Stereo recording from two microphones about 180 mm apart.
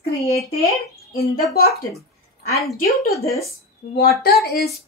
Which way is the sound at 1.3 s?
60° left (ahead or behind).